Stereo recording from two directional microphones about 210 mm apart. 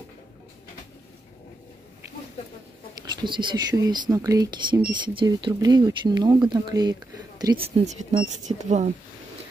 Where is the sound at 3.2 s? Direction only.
20° right (ahead or behind).